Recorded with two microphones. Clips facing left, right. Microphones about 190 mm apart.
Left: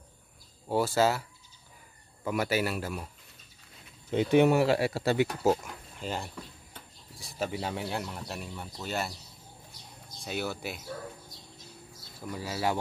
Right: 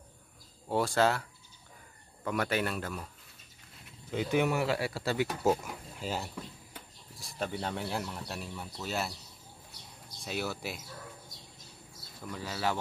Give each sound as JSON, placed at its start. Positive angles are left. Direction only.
{"t": 0.7, "sound": "speech", "side_deg": 5}
{"t": 2.2, "sound": "speech", "side_deg": 5}
{"t": 4.1, "sound": "speech", "side_deg": 25}
{"t": 5.4, "sound": "speech", "side_deg": 0}
{"t": 10.2, "sound": "speech", "side_deg": 0}
{"t": 12.2, "sound": "speech", "side_deg": 10}